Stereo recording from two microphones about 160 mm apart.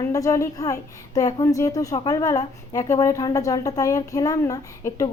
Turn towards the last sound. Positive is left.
turn(degrees=20)  # may be behind; listen again after turning